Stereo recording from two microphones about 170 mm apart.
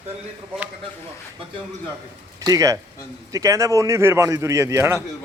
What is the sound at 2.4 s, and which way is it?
A man's voice, 20° right (ahead or behind).